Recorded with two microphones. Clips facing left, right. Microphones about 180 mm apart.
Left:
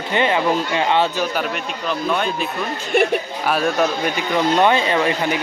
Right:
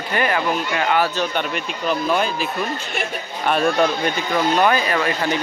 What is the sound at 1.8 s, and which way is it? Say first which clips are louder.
Speech: right 1 dB; 5° right (ahead or behind).